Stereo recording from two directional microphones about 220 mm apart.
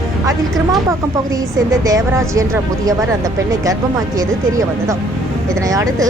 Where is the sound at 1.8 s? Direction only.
15° right (ahead or behind).